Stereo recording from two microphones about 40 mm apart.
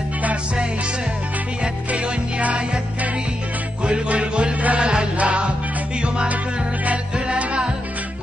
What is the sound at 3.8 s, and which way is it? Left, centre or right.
Music, right.